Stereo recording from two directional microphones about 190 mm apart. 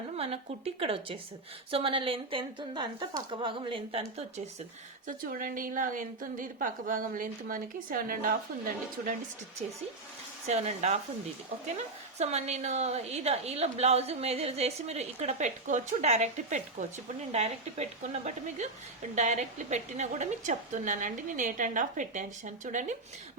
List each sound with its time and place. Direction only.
0.2 s a woman's voice: 30° right (ahead or behind)
5.0 s a woman's voice: 45° right (ahead or behind)
10.4 s a woman's voice: 35° right (ahead or behind)
12.2 s a woman's voice: 35° right (ahead or behind)